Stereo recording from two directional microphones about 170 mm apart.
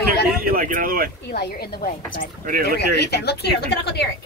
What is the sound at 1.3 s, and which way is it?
Speech, 70° left (ahead or behind).